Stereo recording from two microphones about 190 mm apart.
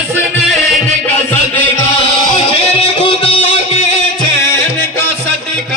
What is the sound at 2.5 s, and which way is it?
Music, 30° left (ahead or behind).